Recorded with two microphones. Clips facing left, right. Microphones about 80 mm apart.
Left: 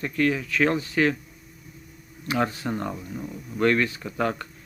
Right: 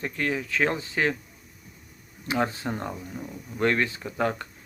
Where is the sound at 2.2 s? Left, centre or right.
Right.